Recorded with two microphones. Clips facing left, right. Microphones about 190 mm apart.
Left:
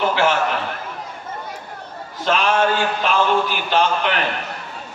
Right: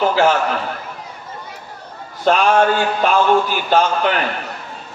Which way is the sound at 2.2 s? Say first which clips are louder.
Right 4 dB; 45° right (ahead or behind).